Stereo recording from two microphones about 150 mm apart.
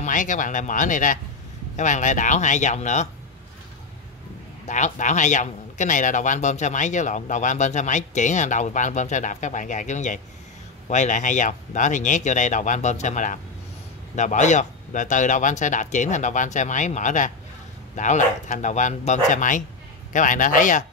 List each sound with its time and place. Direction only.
0.0 s speech: 60° left (ahead or behind)
4.6 s speech: 55° left (ahead or behind)